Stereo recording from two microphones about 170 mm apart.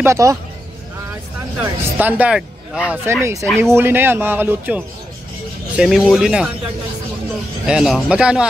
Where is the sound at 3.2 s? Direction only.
20° right (ahead or behind).